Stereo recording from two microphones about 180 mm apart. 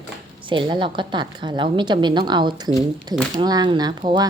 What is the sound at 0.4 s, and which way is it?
Speech, 25° right (ahead or behind).